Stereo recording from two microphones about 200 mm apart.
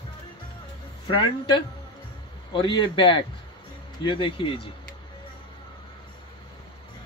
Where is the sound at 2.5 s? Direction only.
25° left (ahead or behind).